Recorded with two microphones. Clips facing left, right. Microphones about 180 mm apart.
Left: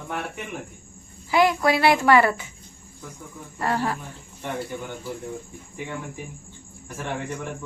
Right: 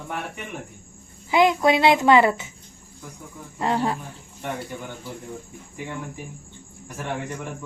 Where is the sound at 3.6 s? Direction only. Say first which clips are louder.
Right 2 dB; 20° right (ahead or behind).